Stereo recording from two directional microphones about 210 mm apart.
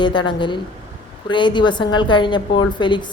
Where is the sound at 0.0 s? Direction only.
20° left (ahead or behind).